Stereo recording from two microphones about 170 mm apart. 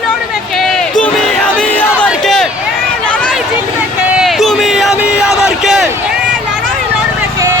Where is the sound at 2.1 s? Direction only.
Centre (ahead or behind).